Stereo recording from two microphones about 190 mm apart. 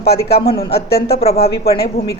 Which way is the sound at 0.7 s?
30° left (ahead or behind).